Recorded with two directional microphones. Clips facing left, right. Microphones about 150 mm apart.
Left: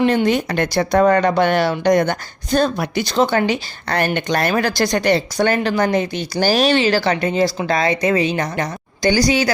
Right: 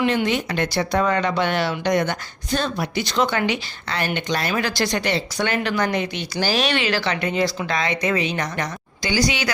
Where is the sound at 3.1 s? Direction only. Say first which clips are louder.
Left 5 dB; 35° left (ahead or behind).